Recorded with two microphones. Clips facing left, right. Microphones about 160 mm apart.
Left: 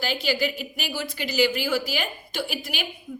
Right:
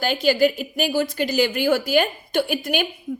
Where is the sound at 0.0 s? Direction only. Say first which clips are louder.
Right 7 dB; 45° right (ahead or behind).